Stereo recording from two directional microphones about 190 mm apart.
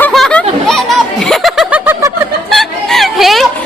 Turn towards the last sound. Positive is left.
turn(degrees=0)  # may be behind; listen again after turning